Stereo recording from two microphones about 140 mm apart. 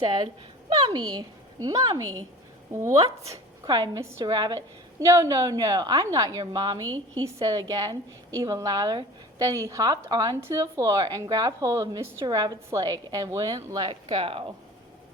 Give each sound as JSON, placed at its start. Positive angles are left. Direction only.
{"t": 0.7, "sound": "a woman's voice", "side_deg": -30}
{"t": 14.2, "sound": "speech", "side_deg": -45}